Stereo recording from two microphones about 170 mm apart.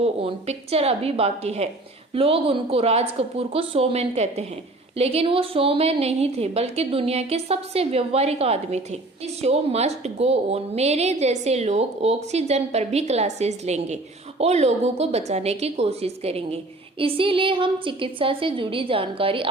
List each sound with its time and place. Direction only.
0.0 s a woman's voice: 35° right (ahead or behind)